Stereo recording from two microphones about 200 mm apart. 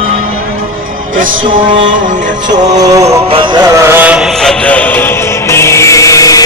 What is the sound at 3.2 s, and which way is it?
Music, 25° right (ahead or behind).